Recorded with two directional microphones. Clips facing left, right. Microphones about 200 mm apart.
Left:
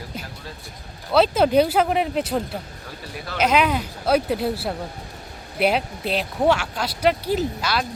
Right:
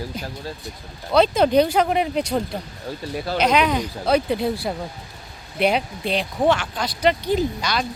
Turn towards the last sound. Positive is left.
turn(degrees=5)  # may be behind; listen again after turning